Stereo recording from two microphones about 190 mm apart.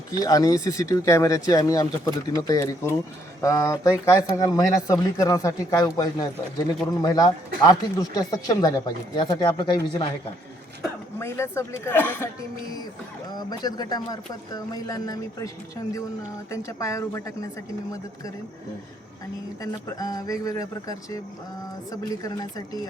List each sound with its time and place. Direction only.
0.2 s speech: 20° left (ahead or behind)
11.2 s speech: 15° left (ahead or behind)
13.3 s speech: 20° left (ahead or behind)
19.6 s speech: 20° left (ahead or behind)